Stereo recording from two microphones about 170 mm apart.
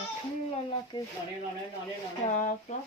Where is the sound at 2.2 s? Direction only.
45° left (ahead or behind).